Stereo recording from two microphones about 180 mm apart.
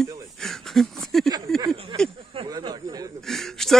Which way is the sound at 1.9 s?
25° right (ahead or behind).